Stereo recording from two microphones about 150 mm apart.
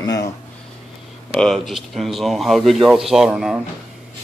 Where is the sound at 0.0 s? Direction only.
25° left (ahead or behind).